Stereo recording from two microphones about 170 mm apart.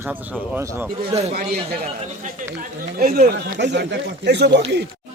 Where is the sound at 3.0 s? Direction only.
60° right (ahead or behind); by 4.6 s 85° right.